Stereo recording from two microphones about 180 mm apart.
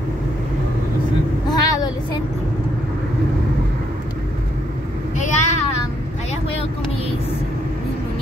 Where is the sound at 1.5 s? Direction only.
20° left (ahead or behind).